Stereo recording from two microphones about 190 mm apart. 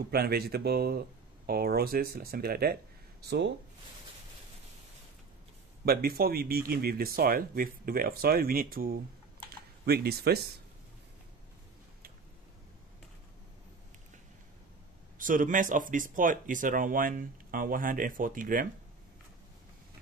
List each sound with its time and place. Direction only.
0.1 s speech: 55° right (ahead or behind)
5.9 s speech: 55° right (ahead or behind)
15.1 s speech: 45° right (ahead or behind)